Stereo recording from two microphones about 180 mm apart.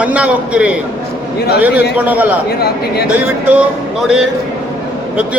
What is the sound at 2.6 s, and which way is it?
Speech, 60° left (ahead or behind).